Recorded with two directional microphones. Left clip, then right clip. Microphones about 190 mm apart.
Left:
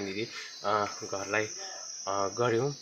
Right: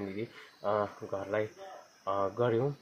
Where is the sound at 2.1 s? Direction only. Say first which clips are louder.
Left 1 dB; 20° left (ahead or behind).